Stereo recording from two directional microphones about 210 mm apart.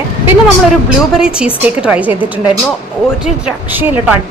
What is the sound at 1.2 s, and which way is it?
Speech, 5° right (ahead or behind).